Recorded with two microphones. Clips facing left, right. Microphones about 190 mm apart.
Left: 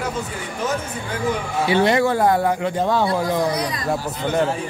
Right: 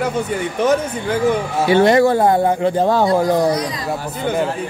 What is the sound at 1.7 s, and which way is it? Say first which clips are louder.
Speech: right 5 dB; 40° right (ahead or behind).